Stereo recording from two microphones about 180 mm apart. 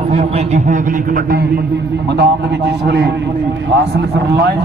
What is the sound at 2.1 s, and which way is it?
A man's voice, 70° right (ahead or behind).